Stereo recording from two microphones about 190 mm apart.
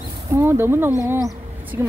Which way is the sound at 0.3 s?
15° right (ahead or behind).